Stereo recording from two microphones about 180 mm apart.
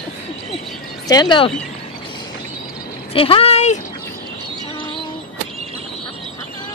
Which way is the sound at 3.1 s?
30° left (ahead or behind).